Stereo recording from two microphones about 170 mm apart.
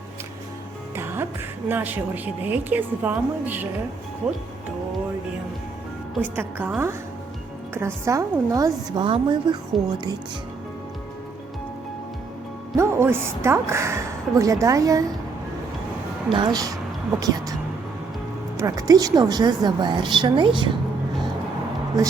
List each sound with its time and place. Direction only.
0.9 s speech: 15° right (ahead or behind)
6.3 s a woman's voice: 10° right (ahead or behind); by 9.6 s 30° right (ahead or behind)
12.7 s a woman's voice: 15° right (ahead or behind)
16.3 s a woman's voice: 25° right (ahead or behind)
18.6 s a woman's voice: 20° right (ahead or behind)